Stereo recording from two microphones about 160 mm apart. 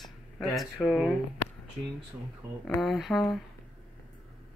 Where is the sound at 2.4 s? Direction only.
20° right (ahead or behind).